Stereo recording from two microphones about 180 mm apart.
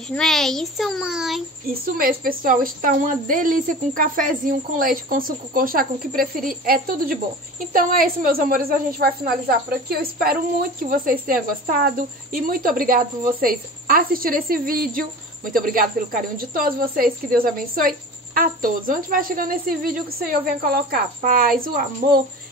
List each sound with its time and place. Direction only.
0.1 s a child's voice: centre (ahead or behind)
1.7 s a woman's voice: 55° right (ahead or behind)